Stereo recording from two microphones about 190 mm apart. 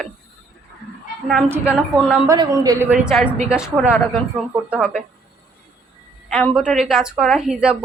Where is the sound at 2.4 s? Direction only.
20° right (ahead or behind).